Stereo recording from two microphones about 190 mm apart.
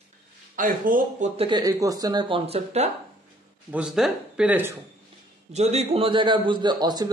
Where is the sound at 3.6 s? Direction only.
5° right (ahead or behind).